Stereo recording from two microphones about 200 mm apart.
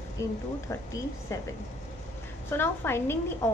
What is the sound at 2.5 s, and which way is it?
Speech, 10° left (ahead or behind).